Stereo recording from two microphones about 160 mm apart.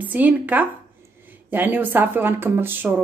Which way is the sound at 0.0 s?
10° right (ahead or behind).